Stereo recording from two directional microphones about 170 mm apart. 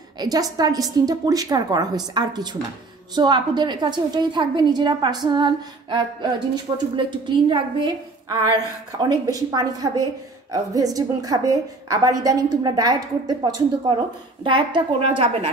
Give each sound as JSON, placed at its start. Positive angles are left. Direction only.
{"t": 0.2, "sound": "a woman's voice", "side_deg": -20}